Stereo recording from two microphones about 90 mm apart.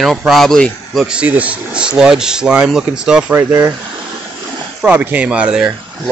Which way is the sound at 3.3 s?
25° right (ahead or behind).